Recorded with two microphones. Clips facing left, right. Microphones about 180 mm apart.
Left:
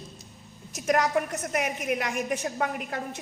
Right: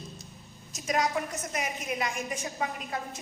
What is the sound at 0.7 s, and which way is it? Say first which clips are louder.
A woman's voice: left 4 dB; 60° left (ahead or behind).